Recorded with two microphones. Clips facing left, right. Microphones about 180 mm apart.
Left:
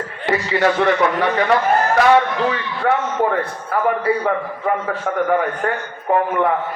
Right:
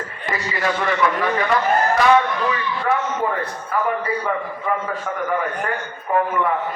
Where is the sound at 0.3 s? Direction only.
70° left (ahead or behind).